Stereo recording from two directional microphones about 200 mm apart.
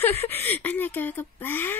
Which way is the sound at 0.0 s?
10° left (ahead or behind).